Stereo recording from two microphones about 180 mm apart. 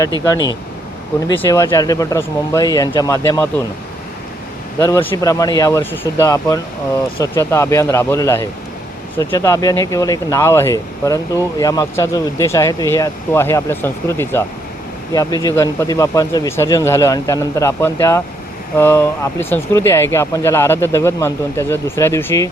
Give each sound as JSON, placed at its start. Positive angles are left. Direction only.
{"t": 1.3, "sound": "speech", "side_deg": 25}
{"t": 4.8, "sound": "speech", "side_deg": 15}